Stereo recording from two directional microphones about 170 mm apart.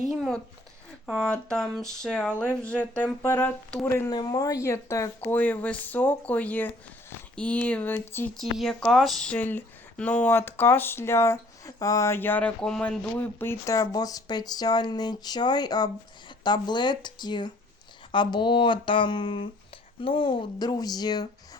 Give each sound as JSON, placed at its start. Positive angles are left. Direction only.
{"t": 0.0, "sound": "a sound", "side_deg": 0}
{"t": 1.0, "sound": "speech", "side_deg": 5}
{"t": 8.4, "sound": "speech", "side_deg": 0}
{"t": 13.1, "sound": "speech", "side_deg": 15}